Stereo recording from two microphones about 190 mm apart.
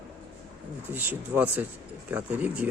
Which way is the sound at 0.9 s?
10° right (ahead or behind).